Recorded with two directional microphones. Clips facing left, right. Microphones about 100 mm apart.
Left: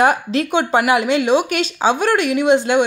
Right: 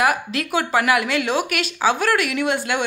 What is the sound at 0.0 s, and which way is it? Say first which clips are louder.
Speech: left 5 dB; 30° left (ahead or behind).